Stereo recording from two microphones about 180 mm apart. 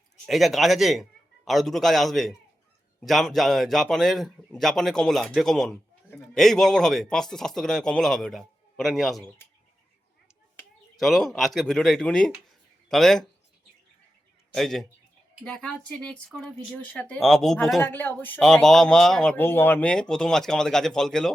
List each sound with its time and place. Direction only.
0.3 s a man's voice: centre (ahead or behind)
11.0 s a man's voice: centre (ahead or behind)
14.5 s a man's voice: centre (ahead or behind)